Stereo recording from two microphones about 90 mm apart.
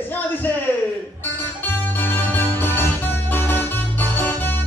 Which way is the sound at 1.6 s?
20° left (ahead or behind).